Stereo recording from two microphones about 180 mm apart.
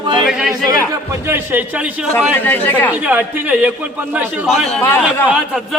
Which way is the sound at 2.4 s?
10° left (ahead or behind).